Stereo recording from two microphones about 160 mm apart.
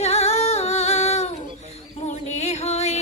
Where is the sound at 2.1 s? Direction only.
45° left (ahead or behind).